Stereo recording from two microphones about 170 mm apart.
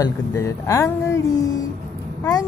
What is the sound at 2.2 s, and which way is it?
Speech, 20° left (ahead or behind).